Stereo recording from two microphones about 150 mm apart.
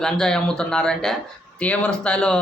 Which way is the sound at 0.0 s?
5° left (ahead or behind).